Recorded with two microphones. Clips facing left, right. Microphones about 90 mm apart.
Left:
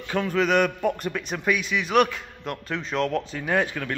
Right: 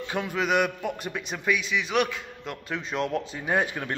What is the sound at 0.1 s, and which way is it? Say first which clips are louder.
A man's voice: left 4 dB; 10° right (ahead or behind).